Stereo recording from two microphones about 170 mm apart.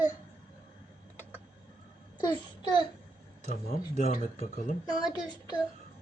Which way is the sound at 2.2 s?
25° left (ahead or behind).